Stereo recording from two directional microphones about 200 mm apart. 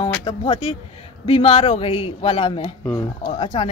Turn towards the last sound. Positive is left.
turn(degrees=30)  # may be behind; listen again after turning